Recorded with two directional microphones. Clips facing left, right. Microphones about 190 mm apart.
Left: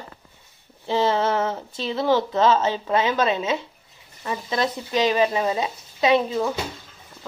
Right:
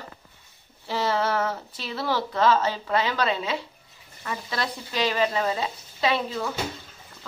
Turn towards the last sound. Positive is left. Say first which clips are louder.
# left 6 dB
turn(degrees=20)  # may be behind; listen again after turning